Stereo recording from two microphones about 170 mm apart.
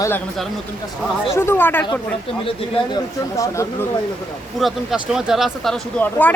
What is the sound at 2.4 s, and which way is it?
Speech, 30° left (ahead or behind).